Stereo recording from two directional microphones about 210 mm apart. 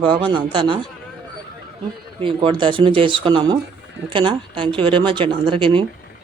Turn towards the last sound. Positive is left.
turn(degrees=-25)  # may be behind; listen again after turning